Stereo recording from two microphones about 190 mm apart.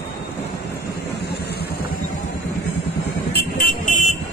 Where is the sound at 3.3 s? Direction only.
55° left (ahead or behind).